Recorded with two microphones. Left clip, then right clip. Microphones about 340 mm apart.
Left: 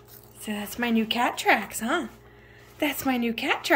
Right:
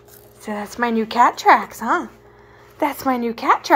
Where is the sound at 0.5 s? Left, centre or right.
Right.